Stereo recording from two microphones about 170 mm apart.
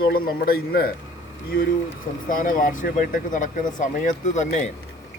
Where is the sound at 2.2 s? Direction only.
50° left (ahead or behind).